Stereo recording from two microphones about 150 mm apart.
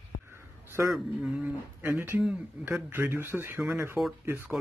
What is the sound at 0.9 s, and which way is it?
Speech, 5° right (ahead or behind).